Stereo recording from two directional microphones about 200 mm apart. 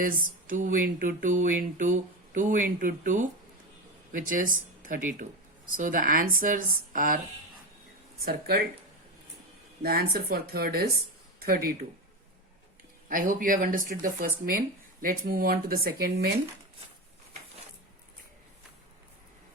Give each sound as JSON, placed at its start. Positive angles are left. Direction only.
{"t": 0.0, "sound": "speech", "side_deg": -45}
{"t": 8.2, "sound": "speech", "side_deg": -50}
{"t": 9.8, "sound": "speech", "side_deg": -50}
{"t": 13.1, "sound": "speech", "side_deg": -45}